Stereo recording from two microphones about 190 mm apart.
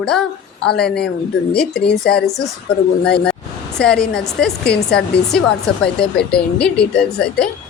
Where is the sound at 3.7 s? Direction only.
5° left (ahead or behind).